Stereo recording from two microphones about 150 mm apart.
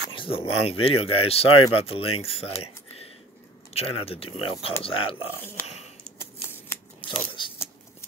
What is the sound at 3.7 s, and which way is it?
Speech, 40° left (ahead or behind).